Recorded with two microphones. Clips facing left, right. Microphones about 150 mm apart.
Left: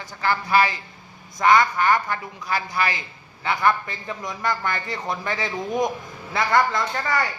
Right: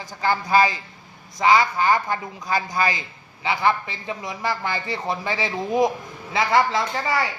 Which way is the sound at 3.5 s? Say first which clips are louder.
Even; 25° right (ahead or behind).